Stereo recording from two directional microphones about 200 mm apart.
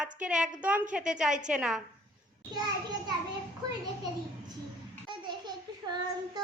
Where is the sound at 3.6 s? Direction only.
20° right (ahead or behind).